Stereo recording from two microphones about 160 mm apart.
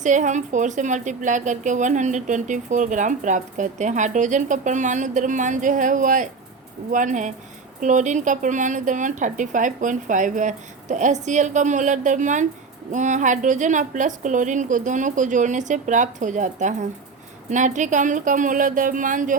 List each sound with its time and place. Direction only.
0.0 s a woman's voice: 50° right (ahead or behind)